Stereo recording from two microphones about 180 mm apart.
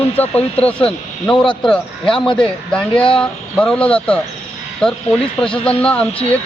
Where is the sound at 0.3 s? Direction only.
35° left (ahead or behind).